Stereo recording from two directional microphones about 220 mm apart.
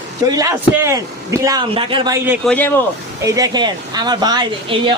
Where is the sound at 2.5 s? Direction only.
10° left (ahead or behind).